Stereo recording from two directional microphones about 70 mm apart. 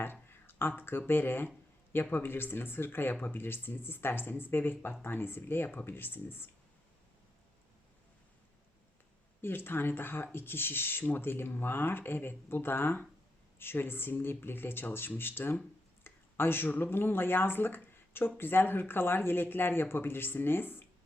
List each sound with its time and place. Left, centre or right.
0.0 s a sound: left
0.8 s speech: left
9.4 s speech: left